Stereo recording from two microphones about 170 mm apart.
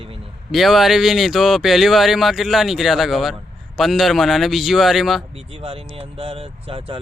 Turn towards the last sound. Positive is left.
turn(degrees=-30)  # may be behind; listen again after turning